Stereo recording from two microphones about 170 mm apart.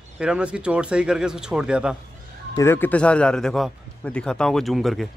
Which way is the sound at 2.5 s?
15° left (ahead or behind).